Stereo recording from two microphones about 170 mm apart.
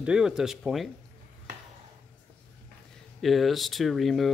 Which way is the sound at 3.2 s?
Centre (ahead or behind).